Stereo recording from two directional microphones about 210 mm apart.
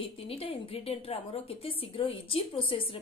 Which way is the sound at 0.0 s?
25° left (ahead or behind).